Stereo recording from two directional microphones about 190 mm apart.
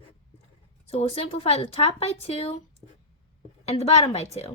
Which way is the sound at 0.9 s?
30° left (ahead or behind).